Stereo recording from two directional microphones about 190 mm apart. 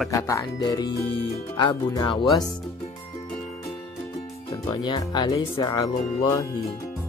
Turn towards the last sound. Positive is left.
turn(degrees=20)  # may be behind; listen again after turning